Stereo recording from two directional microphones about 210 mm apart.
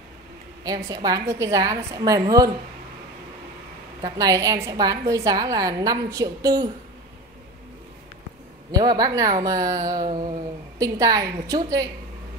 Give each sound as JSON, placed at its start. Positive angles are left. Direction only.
{"t": 0.8, "sound": "a woman's voice", "side_deg": -15}
{"t": 4.0, "sound": "a woman's voice", "side_deg": -15}
{"t": 8.7, "sound": "a woman's voice", "side_deg": -20}